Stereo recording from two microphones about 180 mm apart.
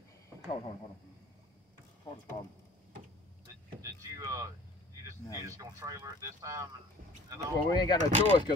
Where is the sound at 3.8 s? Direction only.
20° right (ahead or behind).